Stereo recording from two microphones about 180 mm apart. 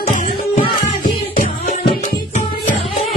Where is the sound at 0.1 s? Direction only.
45° left (ahead or behind).